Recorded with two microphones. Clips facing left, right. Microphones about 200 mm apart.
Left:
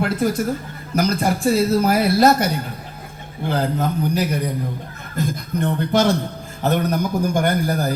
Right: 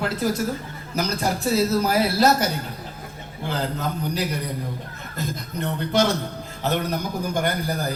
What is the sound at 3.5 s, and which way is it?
Speech, 50° left (ahead or behind).